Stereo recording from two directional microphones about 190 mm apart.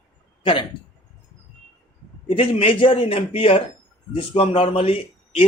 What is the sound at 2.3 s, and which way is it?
A man's voice, 25° left (ahead or behind).